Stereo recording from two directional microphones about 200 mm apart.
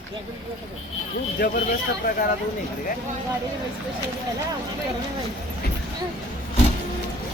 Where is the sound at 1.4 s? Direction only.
50° left (ahead or behind).